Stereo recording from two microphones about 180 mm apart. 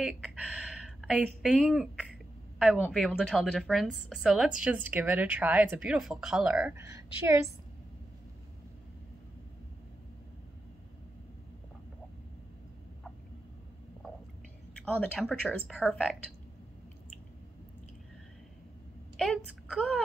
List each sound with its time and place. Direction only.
0.0 s a woman's voice: 5° right (ahead or behind)
6.8 s speech: 15° right (ahead or behind)
14.9 s a woman's voice: 5° left (ahead or behind)
19.1 s a woman's voice: 5° left (ahead or behind)